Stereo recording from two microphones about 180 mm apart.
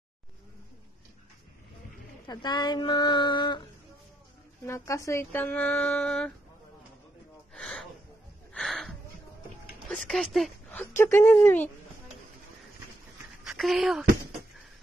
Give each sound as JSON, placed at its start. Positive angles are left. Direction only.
{"t": 2.2, "sound": "speech", "side_deg": 25}
{"t": 4.6, "sound": "speech", "side_deg": 15}
{"t": 7.5, "sound": "gasp", "side_deg": 5}
{"t": 8.5, "sound": "a sound", "side_deg": 0}
{"t": 9.8, "sound": "speech", "side_deg": 0}
{"t": 11.0, "sound": "speech", "side_deg": 15}
{"t": 13.4, "sound": "a sound", "side_deg": 0}